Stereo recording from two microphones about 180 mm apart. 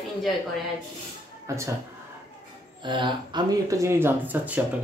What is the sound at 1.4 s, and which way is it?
Speech, 15° right (ahead or behind).